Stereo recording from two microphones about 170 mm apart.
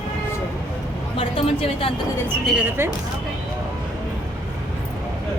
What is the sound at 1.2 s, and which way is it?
Speech, 35° left (ahead or behind).